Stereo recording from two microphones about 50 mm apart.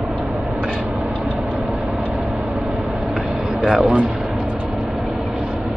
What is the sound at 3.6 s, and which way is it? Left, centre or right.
Speech, centre.